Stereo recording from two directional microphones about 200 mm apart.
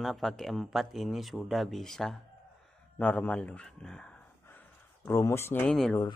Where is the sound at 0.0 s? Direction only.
Centre (ahead or behind).